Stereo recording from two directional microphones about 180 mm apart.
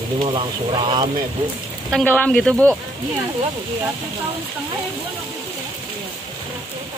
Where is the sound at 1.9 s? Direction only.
5° left (ahead or behind).